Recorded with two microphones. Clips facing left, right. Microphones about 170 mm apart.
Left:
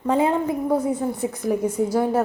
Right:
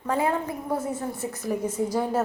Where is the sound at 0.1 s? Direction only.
20° left (ahead or behind).